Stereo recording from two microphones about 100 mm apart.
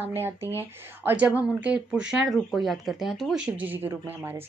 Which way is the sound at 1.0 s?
15° right (ahead or behind).